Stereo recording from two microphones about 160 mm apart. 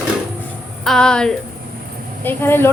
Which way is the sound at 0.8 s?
5° left (ahead or behind).